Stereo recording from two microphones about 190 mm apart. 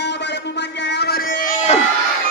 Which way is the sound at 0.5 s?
65° left (ahead or behind).